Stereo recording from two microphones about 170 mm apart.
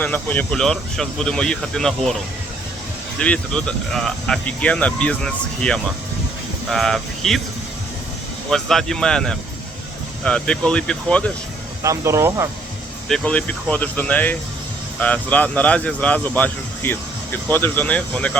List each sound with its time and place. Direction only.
0.0 s speech: 10° left (ahead or behind)
3.2 s speech: 5° left (ahead or behind)
8.4 s speech: centre (ahead or behind)
11.8 s speech: 20° right (ahead or behind)
13.1 s speech: 5° left (ahead or behind)